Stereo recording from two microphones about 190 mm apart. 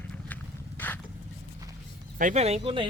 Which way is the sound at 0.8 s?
10° left (ahead or behind).